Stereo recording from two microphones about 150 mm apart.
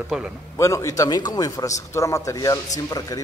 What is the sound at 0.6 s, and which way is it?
A man's voice, 20° left (ahead or behind).